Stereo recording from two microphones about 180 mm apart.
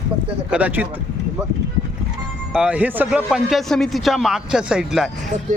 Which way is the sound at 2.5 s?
5° right (ahead or behind).